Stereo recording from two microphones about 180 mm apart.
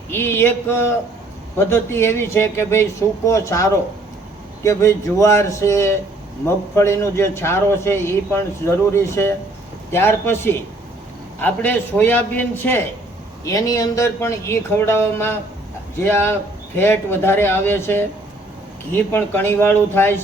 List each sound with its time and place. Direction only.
0.1 s a man's voice: 15° left (ahead or behind)